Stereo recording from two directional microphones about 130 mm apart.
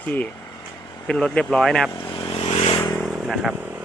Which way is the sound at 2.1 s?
45° left (ahead or behind).